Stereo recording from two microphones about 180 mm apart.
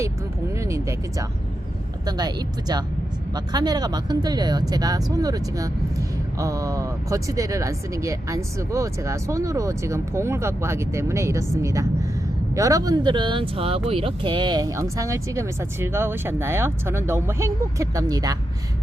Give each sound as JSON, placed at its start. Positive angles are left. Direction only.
{"t": 0.5, "sound": "speech", "side_deg": -15}